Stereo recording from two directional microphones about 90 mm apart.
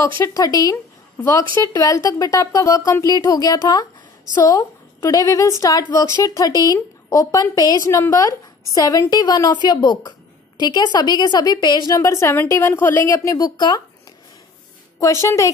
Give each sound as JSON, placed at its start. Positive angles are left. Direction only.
{"t": 0.2, "sound": "a woman's voice", "side_deg": 40}
{"t": 1.1, "sound": "a woman's voice", "side_deg": 30}
{"t": 11.9, "sound": "a woman's voice", "side_deg": 35}
{"t": 13.1, "sound": "a woman's voice", "side_deg": 35}
{"t": 15.0, "sound": "a woman's voice", "side_deg": 35}